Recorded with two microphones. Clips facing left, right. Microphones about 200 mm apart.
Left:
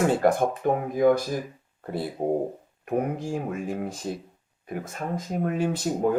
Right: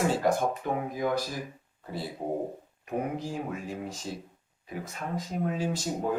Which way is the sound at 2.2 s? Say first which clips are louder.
Left 7 dB; 50° left (ahead or behind).